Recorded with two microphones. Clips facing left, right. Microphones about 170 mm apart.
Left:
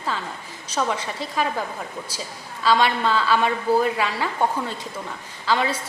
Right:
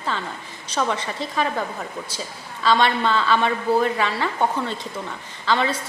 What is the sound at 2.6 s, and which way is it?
A woman's voice, 5° left (ahead or behind).